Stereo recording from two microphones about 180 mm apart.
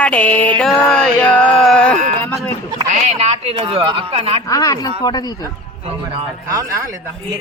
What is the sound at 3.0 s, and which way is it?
Speech, 35° right (ahead or behind).